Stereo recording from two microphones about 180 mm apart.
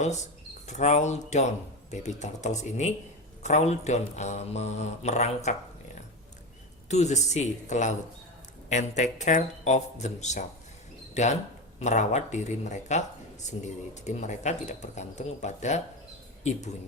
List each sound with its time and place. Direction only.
0.0 s speech: 40° left (ahead or behind)